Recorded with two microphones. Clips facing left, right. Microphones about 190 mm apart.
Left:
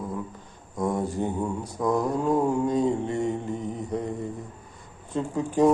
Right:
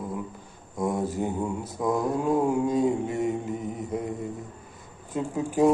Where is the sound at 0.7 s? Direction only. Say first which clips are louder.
Left 1 dB; 25° right (ahead or behind).